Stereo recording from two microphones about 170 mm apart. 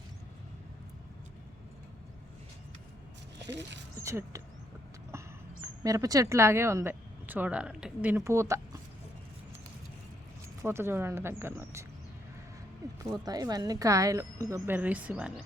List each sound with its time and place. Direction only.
4.0 s speech: 20° right (ahead or behind)
5.6 s speech: 20° right (ahead or behind)
10.6 s speech: 15° right (ahead or behind)
13.0 s speech: 20° right (ahead or behind)
14.8 s speech: 10° right (ahead or behind)